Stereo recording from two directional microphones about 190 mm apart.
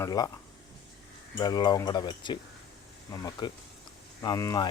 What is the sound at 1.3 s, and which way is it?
Speech, 20° left (ahead or behind).